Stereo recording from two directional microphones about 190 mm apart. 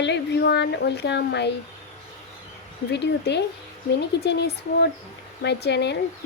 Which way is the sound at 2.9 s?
60° left (ahead or behind).